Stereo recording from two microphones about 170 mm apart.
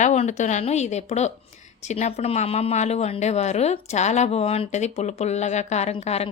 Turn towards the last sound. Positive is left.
turn(degrees=40)  # may be behind; listen again after turning